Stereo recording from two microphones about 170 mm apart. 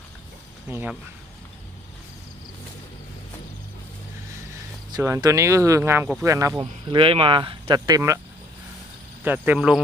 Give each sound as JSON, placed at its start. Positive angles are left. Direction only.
{"t": 0.7, "sound": "speech", "side_deg": -10}
{"t": 4.9, "sound": "speech", "side_deg": -20}
{"t": 9.2, "sound": "speech", "side_deg": -10}